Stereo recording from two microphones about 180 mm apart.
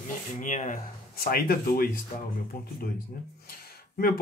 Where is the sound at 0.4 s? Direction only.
45° left (ahead or behind).